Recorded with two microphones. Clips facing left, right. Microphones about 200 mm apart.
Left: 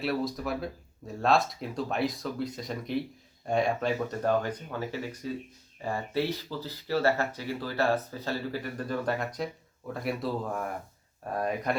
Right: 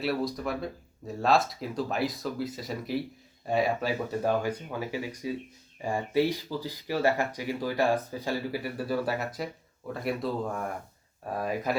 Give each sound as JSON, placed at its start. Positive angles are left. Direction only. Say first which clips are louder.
{"t": 0.0, "sound": "speech", "louder": "right 1 dB", "side_deg": 0}